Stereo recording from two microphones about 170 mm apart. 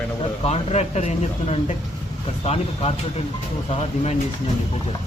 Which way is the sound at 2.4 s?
35° left (ahead or behind).